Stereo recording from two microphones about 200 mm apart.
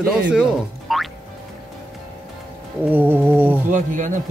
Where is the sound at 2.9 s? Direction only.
10° right (ahead or behind).